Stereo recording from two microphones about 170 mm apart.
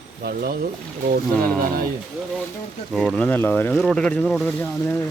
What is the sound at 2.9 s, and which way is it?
Speech, centre (ahead or behind).